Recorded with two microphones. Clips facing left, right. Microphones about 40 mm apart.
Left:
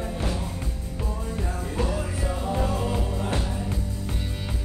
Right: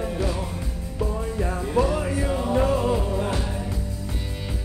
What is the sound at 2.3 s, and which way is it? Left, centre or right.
Music, right.